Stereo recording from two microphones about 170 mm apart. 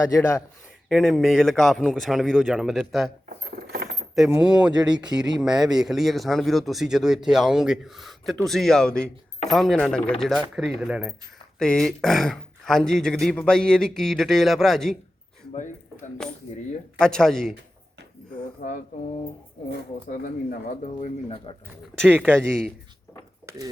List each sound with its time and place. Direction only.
0.9 s speech: centre (ahead or behind)
3.2 s keys jangling: 65° right (ahead or behind)
4.1 s speech: 5° right (ahead or behind)
17.0 s speech: 5° left (ahead or behind)
18.6 s mantra: 55° left (ahead or behind)
20.1 s speech: 55° left (ahead or behind)
20.8 s speech: 35° left (ahead or behind)
22.1 s speech: 10° right (ahead or behind)
22.4 s speech: 5° left (ahead or behind)
23.5 s speech: 15° right (ahead or behind)